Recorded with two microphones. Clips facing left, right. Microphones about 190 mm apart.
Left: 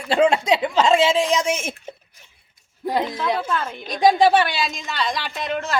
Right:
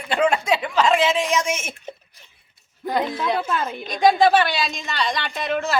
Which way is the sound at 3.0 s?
5° right (ahead or behind).